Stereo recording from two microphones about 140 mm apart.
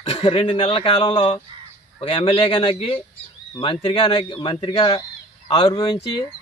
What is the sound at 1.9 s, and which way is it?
Speech, 40° left (ahead or behind).